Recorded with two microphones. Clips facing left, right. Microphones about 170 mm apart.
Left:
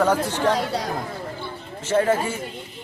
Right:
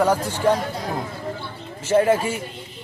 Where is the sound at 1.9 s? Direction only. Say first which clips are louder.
Right 2 dB; 10° right (ahead or behind).